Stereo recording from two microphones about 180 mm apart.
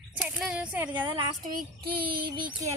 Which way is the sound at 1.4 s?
55° right (ahead or behind).